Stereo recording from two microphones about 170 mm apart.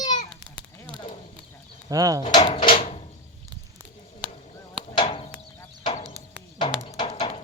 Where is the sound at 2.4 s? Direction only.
35° left (ahead or behind).